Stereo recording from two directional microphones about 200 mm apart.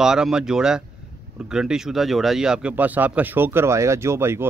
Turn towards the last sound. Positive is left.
turn(degrees=-10)  # may be behind; listen again after turning